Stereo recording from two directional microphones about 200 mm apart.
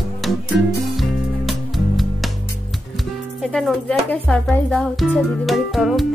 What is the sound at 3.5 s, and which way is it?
Speech, centre (ahead or behind).